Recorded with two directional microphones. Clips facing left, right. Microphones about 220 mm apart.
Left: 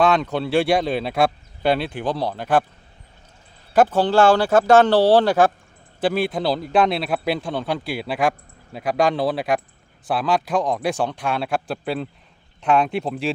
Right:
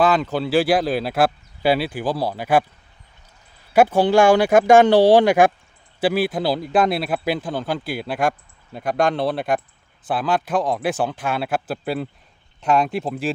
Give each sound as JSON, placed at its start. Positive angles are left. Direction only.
{"t": 0.0, "sound": "speech", "side_deg": 0}
{"t": 3.7, "sound": "speech", "side_deg": -10}